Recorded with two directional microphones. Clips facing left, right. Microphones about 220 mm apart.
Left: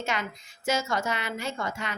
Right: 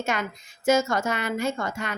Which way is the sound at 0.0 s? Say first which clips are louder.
Right 3 dB; 50° right (ahead or behind).